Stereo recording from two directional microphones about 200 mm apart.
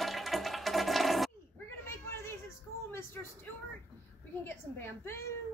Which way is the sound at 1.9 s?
15° left (ahead or behind).